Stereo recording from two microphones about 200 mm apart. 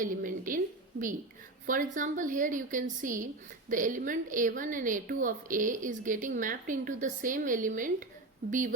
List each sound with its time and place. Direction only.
0.0 s a woman's voice: 40° right (ahead or behind)